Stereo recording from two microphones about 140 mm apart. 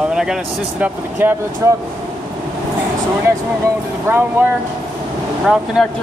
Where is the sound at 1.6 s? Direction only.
25° right (ahead or behind).